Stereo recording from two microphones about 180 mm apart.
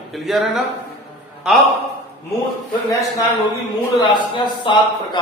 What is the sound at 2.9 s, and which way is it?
A man's voice, 20° left (ahead or behind).